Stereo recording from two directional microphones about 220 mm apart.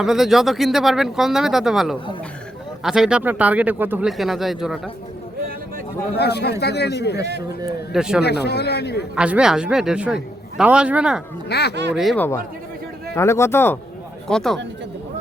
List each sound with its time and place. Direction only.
0.0 s speech: centre (ahead or behind)
6.1 s a man's voice: 50° left (ahead or behind)
7.9 s speech: 5° right (ahead or behind)
8.2 s a man's voice: 50° left (ahead or behind)
9.1 s speech: 5° right (ahead or behind)
11.4 s a man's voice: 50° left (ahead or behind)
11.7 s speech: 50° right (ahead or behind)
11.9 s speech: 5° left (ahead or behind)